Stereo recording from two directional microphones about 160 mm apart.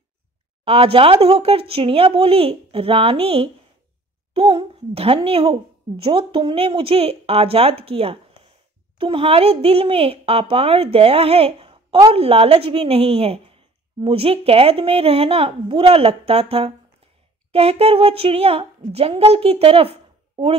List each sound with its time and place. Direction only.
0.7 s speech: 35° right (ahead or behind)